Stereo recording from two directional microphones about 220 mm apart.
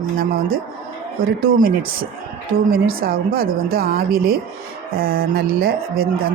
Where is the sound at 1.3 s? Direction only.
40° right (ahead or behind).